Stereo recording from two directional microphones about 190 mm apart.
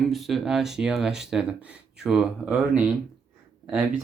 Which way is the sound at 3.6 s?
5° right (ahead or behind).